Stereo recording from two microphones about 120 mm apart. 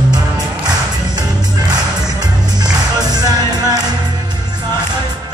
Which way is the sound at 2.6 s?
35° right (ahead or behind).